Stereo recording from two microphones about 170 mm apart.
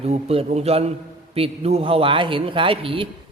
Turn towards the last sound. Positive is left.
turn(degrees=-30)  # may be behind; listen again after turning